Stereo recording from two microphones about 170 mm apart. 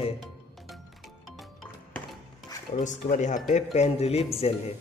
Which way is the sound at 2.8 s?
45° left (ahead or behind).